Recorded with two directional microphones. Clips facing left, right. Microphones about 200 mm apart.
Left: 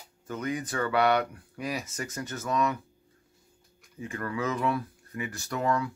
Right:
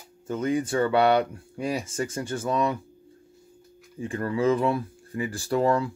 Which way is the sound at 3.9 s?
30° right (ahead or behind).